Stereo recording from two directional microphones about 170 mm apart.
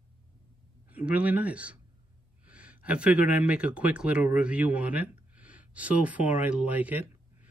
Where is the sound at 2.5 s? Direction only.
10° right (ahead or behind).